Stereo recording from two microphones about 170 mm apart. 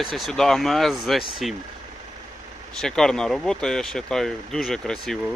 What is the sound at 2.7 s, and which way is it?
Speech, 5° left (ahead or behind).